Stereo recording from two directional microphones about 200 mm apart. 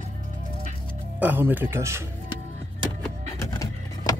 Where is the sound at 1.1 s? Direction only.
10° right (ahead or behind).